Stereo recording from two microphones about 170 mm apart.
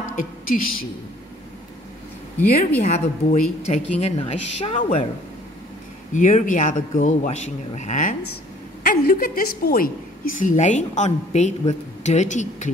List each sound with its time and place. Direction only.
0.1 s a woman's voice: 55° left (ahead or behind)
2.8 s a woman's voice: 45° left (ahead or behind)
6.1 s a woman's voice: 50° left (ahead or behind)
8.8 s a woman's voice: 60° left (ahead or behind)
10.4 s a woman's voice: 45° left (ahead or behind)